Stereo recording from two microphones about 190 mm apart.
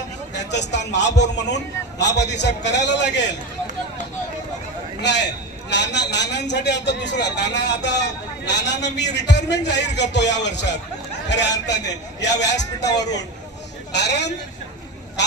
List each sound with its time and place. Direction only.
0.3 s a man's voice: 65° left (ahead or behind)
5.0 s a man's voice: 65° left (ahead or behind)
13.9 s a man's voice: 65° left (ahead or behind)